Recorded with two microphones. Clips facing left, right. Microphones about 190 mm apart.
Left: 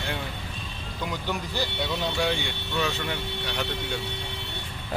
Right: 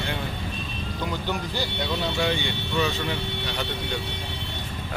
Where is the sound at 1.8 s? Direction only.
Centre (ahead or behind).